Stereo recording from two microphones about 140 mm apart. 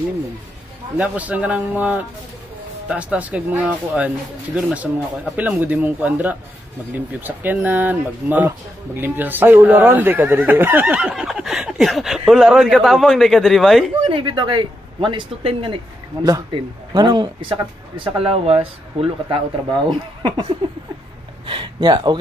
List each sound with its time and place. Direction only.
0.9 s speech: 10° right (ahead or behind)
14.0 s a man's voice: 35° right (ahead or behind)
16.2 s a man's voice: 25° right (ahead or behind)
21.5 s speech: 35° right (ahead or behind)